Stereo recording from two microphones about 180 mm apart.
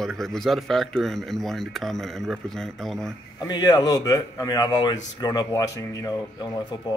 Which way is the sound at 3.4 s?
25° left (ahead or behind).